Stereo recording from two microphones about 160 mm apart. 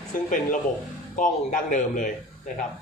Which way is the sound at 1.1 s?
55° left (ahead or behind).